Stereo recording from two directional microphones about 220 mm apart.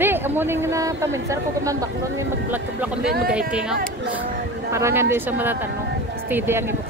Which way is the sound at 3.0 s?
45° right (ahead or behind).